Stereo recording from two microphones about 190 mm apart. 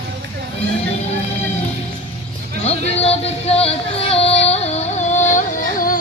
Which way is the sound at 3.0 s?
30° left (ahead or behind).